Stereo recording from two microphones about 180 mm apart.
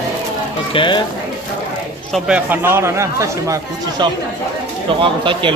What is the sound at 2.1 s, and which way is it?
Speech, 5° right (ahead or behind).